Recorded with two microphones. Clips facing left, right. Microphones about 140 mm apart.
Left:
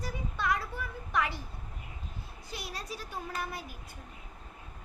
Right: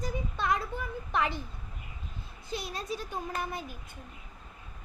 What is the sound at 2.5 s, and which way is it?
Speech, 25° right (ahead or behind).